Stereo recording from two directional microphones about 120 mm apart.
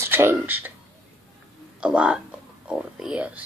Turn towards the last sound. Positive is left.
turn(degrees=-10)  # may be behind; listen again after turning